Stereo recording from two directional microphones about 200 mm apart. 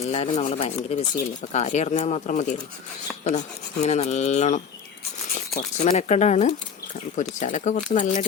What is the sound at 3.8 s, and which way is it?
Speech, 35° left (ahead or behind).